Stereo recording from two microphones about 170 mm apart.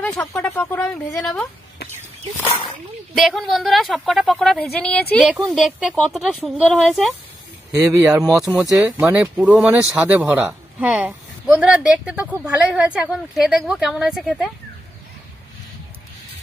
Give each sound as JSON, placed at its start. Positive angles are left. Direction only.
{"t": 0.0, "sound": "a man's voice", "side_deg": 5}
{"t": 3.2, "sound": "a man's voice", "side_deg": 0}
{"t": 7.7, "sound": "speech", "side_deg": -20}
{"t": 8.3, "sound": "a man's voice", "side_deg": 0}